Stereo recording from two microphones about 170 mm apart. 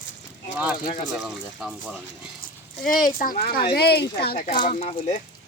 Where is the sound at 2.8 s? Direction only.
55° left (ahead or behind).